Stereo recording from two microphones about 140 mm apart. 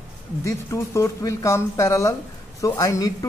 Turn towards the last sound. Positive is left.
turn(degrees=25)  # may be behind; listen again after turning